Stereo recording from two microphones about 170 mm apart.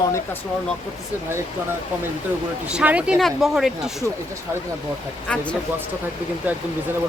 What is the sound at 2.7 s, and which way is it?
Speech, 10° right (ahead or behind).